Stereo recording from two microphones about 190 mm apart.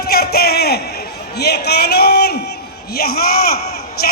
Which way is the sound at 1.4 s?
60° left (ahead or behind).